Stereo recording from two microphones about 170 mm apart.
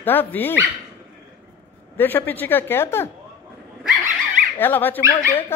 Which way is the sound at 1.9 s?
10° left (ahead or behind).